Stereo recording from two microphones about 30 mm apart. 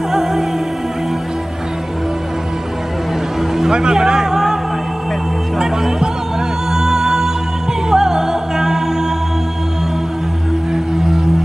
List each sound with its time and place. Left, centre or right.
0.1 s music: centre
3.3 s vehicle: centre
3.7 s music: right
5.6 s music: centre
10.7 s music: centre